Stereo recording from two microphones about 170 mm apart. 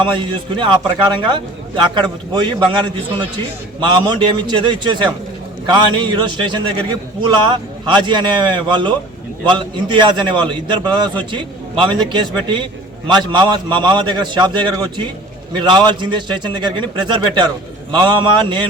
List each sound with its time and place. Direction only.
0.0 s a man's voice: 30° right (ahead or behind)